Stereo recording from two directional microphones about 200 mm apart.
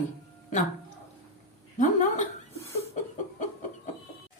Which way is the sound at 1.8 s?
35° left (ahead or behind).